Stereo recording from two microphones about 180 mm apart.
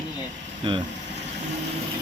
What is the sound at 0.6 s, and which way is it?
Speech, 25° right (ahead or behind).